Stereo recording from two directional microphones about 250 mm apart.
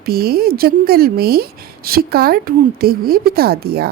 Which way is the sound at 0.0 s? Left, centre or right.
Right.